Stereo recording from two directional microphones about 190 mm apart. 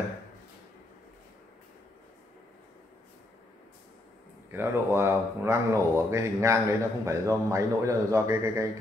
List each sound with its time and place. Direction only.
4.5 s speech: 10° right (ahead or behind)